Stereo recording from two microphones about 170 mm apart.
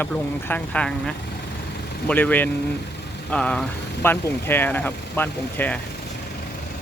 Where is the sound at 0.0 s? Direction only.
10° left (ahead or behind).